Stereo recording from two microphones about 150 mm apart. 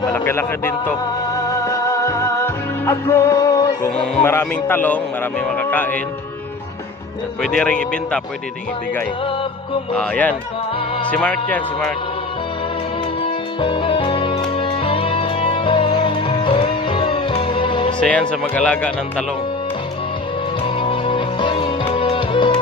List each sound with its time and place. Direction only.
0.1 s a man's voice: 15° left (ahead or behind)
1.6 s music: 20° left (ahead or behind)
3.9 s speech: 5° left (ahead or behind)
4.2 s speech: 15° left (ahead or behind)
7.4 s speech: 5° left (ahead or behind)
9.9 s speech: 10° left (ahead or behind)
13.2 s music: 35° left (ahead or behind)
17.9 s speech: 5° left (ahead or behind)
20.6 s music: 35° left (ahead or behind)